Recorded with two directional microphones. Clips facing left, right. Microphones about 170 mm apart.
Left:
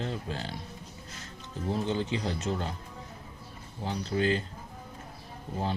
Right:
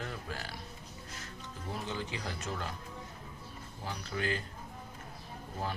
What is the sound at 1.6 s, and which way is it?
Speech, 30° left (ahead or behind).